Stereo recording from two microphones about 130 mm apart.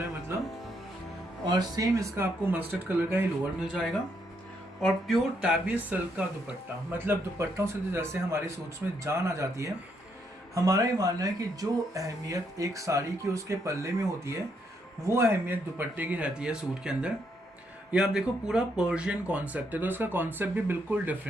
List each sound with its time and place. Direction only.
1.5 s speech: 30° right (ahead or behind)
3.6 s speech: centre (ahead or behind)
5.7 s speech: 10° right (ahead or behind)